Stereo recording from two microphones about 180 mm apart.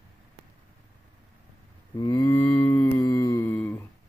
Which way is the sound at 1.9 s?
20° left (ahead or behind).